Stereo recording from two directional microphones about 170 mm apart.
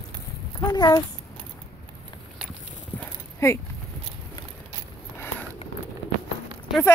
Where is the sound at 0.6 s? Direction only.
25° left (ahead or behind).